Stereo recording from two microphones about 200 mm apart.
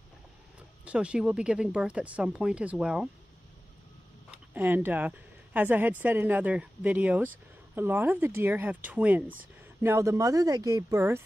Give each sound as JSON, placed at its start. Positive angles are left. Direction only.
{"t": 0.8, "sound": "speech", "side_deg": -5}
{"t": 4.3, "sound": "speech", "side_deg": -10}